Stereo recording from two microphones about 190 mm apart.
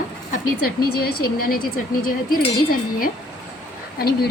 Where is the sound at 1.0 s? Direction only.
55° left (ahead or behind).